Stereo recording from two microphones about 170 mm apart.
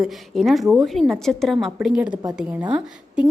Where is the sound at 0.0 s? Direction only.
Centre (ahead or behind).